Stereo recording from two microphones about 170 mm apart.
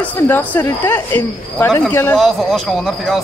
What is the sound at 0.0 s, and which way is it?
Speech, 10° left (ahead or behind).